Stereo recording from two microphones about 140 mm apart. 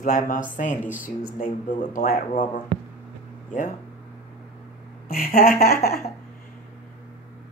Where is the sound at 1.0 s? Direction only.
80° left.